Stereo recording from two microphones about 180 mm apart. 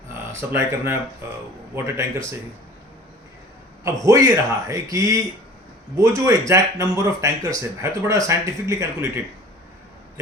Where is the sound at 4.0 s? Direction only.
15° right (ahead or behind).